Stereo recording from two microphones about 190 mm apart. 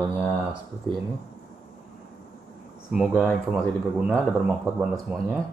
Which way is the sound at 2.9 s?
5° right (ahead or behind).